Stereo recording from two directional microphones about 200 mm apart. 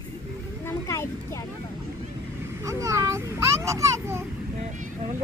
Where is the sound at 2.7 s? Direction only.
15° right (ahead or behind).